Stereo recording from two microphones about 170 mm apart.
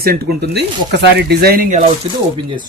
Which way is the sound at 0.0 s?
65° right (ahead or behind).